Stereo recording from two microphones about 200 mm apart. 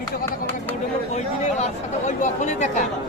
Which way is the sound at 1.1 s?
35° left (ahead or behind).